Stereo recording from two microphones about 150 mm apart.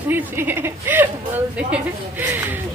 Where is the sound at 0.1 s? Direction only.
15° right (ahead or behind).